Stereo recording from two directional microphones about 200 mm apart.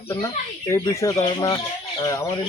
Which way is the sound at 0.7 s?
15° left (ahead or behind).